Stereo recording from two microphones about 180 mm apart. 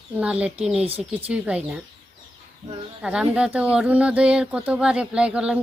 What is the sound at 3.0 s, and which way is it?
Speech, 5° right (ahead or behind).